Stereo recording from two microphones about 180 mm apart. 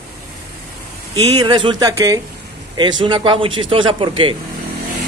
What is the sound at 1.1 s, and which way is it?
Speech, 20° right (ahead or behind).